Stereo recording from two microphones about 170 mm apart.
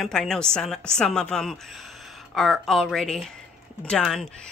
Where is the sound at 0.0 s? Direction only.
Centre (ahead or behind).